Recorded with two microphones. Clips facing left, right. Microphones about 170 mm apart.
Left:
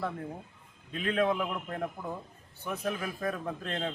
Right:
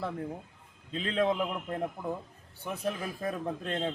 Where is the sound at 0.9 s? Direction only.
30° right (ahead or behind).